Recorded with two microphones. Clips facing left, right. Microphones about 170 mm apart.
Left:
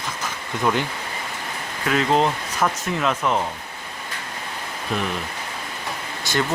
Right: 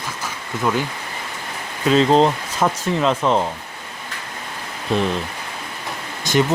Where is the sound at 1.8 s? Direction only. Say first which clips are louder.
Right 5 dB; 25° right (ahead or behind).